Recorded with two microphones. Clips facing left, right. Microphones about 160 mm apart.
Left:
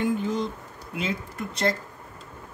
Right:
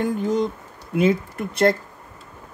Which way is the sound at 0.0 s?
45° right (ahead or behind).